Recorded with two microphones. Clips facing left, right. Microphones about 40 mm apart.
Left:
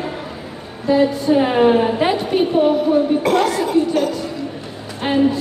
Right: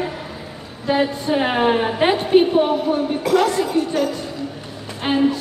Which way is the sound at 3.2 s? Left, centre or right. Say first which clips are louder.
Left 1 dB; left.